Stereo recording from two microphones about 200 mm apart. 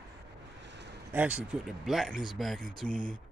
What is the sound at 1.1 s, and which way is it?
Speech, 5° right (ahead or behind).